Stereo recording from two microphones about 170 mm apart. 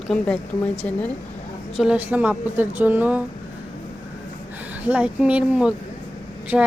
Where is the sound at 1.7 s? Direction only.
5° right (ahead or behind).